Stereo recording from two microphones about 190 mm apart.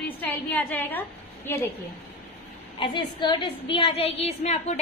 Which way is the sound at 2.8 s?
25° left (ahead or behind).